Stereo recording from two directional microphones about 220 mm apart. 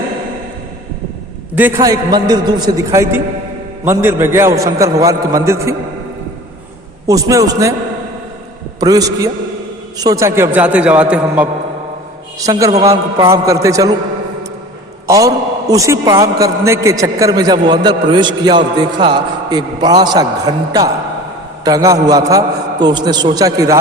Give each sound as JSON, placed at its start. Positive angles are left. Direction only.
{"t": 1.5, "sound": "a man's voice", "side_deg": -10}
{"t": 7.1, "sound": "a man's voice", "side_deg": -15}
{"t": 8.8, "sound": "a man's voice", "side_deg": -15}
{"t": 15.0, "sound": "a man's voice", "side_deg": -15}